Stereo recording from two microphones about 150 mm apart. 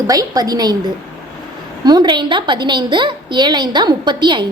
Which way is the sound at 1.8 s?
30° right (ahead or behind).